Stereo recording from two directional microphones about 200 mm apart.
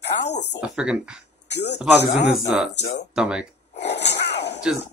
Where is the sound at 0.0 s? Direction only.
60° left (ahead or behind).